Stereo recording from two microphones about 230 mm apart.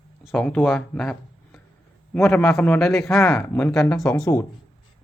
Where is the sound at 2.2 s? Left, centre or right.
Centre.